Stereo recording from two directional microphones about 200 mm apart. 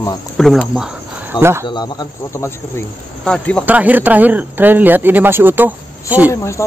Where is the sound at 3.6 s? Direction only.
10° right (ahead or behind).